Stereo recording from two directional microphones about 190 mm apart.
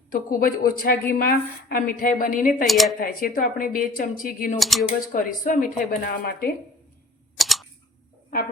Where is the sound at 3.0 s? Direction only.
50° left (ahead or behind).